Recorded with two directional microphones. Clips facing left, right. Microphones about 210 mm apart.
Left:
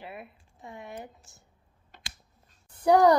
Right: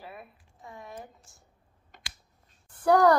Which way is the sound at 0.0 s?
20° left (ahead or behind).